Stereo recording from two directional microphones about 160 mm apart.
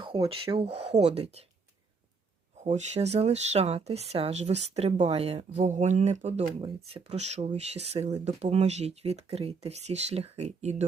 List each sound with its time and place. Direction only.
0.0 s speech: 35° right (ahead or behind)
2.6 s speech: 45° right (ahead or behind)